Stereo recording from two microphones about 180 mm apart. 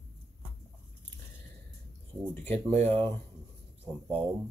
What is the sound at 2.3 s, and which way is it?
Speech, 10° left (ahead or behind).